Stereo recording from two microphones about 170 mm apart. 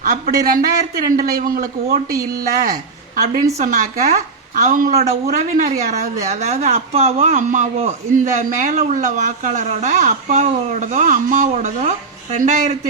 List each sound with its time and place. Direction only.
0.0 s a man's voice: 55° right (ahead or behind)
3.6 s speech: 50° right (ahead or behind)